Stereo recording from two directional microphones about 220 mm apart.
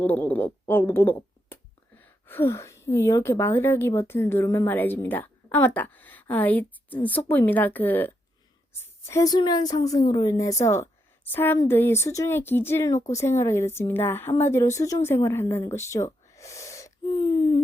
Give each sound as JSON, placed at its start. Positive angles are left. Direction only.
{"t": 0.0, "sound": "speech", "side_deg": 5}